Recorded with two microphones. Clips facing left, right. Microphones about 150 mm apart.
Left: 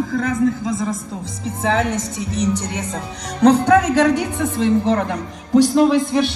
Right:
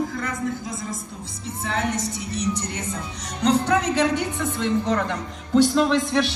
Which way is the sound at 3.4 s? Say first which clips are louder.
Left 7 dB; 50° left (ahead or behind).